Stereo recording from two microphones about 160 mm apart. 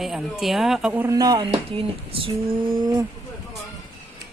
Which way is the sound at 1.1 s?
25° right (ahead or behind).